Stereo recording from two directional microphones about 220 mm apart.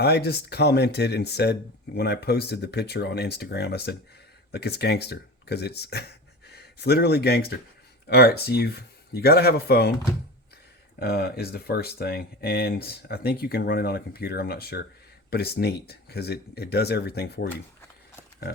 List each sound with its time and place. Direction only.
0.0 s speech: 45° left (ahead or behind)
11.0 s speech: 45° left (ahead or behind)